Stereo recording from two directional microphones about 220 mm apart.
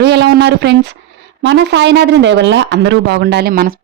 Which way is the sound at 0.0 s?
50° right (ahead or behind).